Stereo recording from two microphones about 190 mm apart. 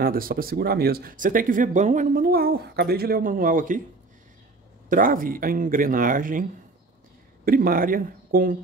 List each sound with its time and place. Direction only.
0.0 s speech: 50° right (ahead or behind)
4.8 s speech: 45° right (ahead or behind)
7.4 s speech: 50° right (ahead or behind)